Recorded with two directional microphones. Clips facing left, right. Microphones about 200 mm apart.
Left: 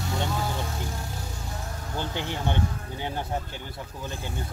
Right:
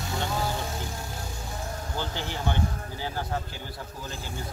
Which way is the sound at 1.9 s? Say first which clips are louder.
Left 3 dB; 20° left (ahead or behind).